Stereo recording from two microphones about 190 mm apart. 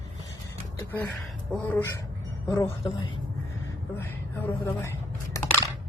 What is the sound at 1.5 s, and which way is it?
A woman's voice, 10° left (ahead or behind).